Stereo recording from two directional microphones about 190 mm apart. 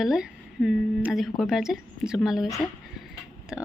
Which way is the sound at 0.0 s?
5° right (ahead or behind).